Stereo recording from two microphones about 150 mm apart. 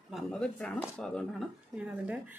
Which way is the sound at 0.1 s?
5° left (ahead or behind).